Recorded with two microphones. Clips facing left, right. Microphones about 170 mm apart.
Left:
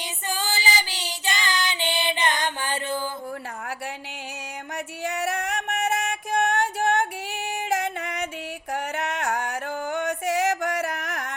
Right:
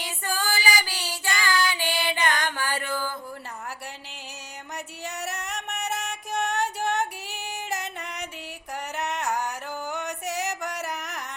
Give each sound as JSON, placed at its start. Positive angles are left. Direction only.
{"t": 0.0, "sound": "child singing", "side_deg": 20}
{"t": 5.0, "sound": "music", "side_deg": 55}